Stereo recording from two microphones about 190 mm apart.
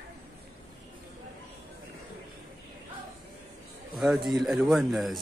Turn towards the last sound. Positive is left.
turn(degrees=0)  # may be behind; listen again after turning